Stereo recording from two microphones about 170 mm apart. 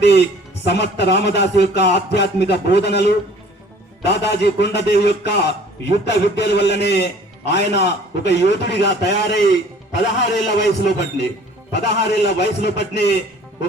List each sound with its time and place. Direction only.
0.0 s a man's voice: 85° left